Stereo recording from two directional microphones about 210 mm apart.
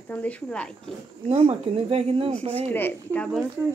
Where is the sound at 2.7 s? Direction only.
10° left (ahead or behind).